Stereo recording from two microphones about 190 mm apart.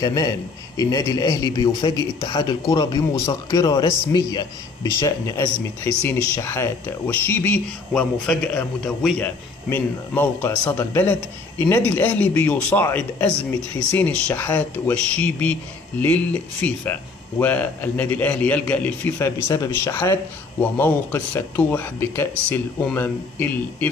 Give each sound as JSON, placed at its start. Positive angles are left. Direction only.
{"t": 0.0, "sound": "speech", "side_deg": 20}